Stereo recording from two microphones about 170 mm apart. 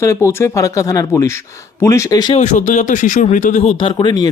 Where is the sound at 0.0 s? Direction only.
15° left (ahead or behind).